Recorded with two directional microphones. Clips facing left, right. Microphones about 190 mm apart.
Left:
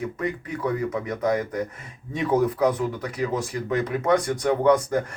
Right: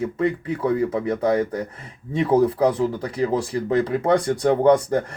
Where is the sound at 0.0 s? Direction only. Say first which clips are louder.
Right 6 dB; 30° right (ahead or behind).